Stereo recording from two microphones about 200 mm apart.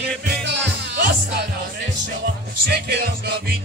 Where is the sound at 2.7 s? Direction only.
55° right (ahead or behind).